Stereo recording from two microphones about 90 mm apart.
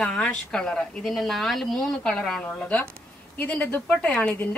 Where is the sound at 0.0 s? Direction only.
10° left (ahead or behind).